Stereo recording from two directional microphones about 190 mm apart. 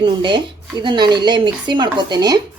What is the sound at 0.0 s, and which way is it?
A woman's voice, 25° right (ahead or behind).